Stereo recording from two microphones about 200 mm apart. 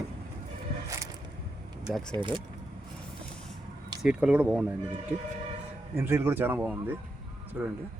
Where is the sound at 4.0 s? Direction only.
5° right (ahead or behind).